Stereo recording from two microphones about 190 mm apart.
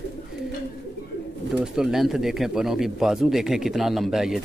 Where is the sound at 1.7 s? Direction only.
Centre (ahead or behind).